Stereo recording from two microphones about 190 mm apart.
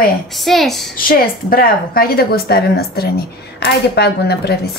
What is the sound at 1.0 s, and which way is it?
A woman's voice, 50° left (ahead or behind).